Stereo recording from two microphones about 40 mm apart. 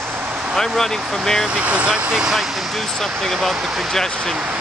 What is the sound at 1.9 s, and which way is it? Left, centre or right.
Speech, centre.